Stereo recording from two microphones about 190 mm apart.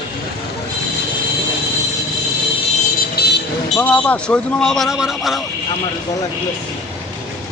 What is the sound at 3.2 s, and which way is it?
Vehicle, 55° left (ahead or behind).